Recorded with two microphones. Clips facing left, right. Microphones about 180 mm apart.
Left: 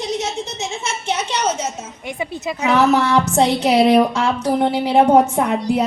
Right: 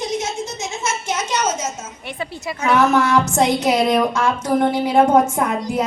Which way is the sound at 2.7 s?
35° left (ahead or behind).